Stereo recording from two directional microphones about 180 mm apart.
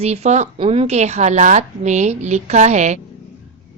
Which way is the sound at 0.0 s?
35° right (ahead or behind).